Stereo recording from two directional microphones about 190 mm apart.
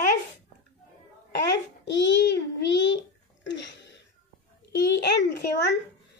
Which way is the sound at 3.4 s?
70° left (ahead or behind).